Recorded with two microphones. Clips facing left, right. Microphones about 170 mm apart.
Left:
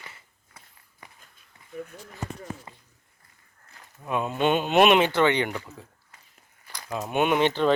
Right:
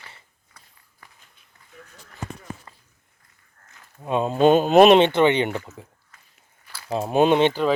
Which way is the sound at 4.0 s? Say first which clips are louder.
Right 7 dB; 30° right (ahead or behind).